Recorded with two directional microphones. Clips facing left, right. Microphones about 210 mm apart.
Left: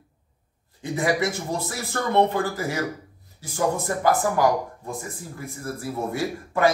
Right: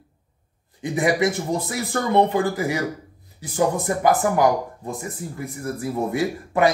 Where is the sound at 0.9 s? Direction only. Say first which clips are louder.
Right 3 dB; 20° right (ahead or behind).